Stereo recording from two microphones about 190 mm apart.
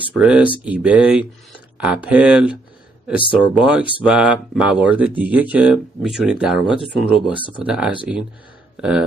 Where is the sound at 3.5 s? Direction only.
5° right (ahead or behind).